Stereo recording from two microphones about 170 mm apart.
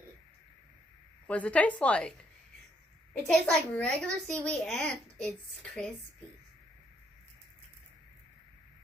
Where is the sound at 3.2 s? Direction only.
5° left (ahead or behind).